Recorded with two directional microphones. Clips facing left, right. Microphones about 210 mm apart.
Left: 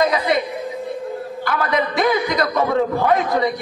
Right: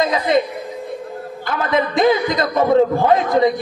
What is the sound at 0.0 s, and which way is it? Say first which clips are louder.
Speech: right 1 dB; 25° right (ahead or behind).